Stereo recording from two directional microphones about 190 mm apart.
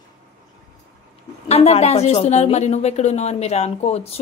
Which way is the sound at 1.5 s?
35° left (ahead or behind).